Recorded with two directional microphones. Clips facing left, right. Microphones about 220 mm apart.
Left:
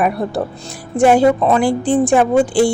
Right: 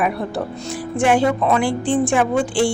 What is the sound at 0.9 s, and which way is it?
A woman's voice, 40° left (ahead or behind).